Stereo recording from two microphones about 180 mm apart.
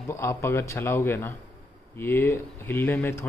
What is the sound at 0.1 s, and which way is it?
Speech, 15° left (ahead or behind).